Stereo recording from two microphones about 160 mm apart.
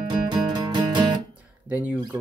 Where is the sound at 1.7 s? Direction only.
10° right (ahead or behind).